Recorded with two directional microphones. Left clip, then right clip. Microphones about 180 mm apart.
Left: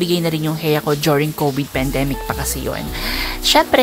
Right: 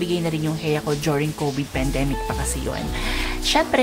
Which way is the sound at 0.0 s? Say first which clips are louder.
Left 5 dB; 25° left (ahead or behind).